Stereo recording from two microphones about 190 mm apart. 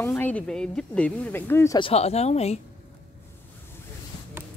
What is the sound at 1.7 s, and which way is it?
Speech, 30° left (ahead or behind).